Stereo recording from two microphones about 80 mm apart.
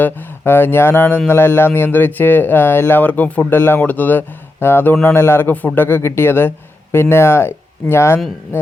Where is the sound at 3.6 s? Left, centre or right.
Left.